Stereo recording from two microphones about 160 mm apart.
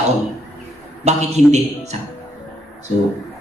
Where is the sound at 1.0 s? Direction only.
45° right (ahead or behind).